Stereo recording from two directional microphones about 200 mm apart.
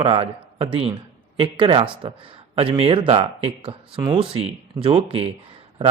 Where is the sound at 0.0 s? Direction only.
30° right (ahead or behind).